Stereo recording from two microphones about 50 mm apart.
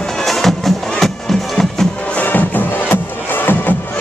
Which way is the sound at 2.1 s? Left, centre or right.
Left.